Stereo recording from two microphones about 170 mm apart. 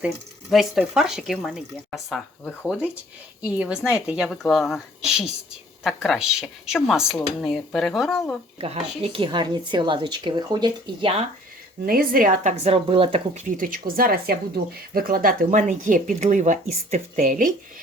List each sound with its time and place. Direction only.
0.5 s speech: centre (ahead or behind)
2.6 s speech: 5° right (ahead or behind)
8.5 s speech: 35° right (ahead or behind)
11.9 s speech: 60° right (ahead or behind)